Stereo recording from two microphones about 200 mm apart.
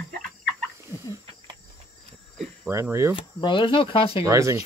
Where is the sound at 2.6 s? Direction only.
15° right (ahead or behind).